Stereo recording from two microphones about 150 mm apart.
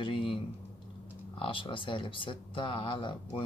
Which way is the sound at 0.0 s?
35° left (ahead or behind).